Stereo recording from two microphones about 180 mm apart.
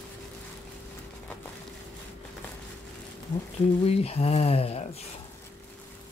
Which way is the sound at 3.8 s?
35° left (ahead or behind).